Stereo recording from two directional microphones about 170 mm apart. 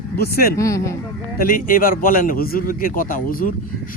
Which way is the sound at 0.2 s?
65° left (ahead or behind).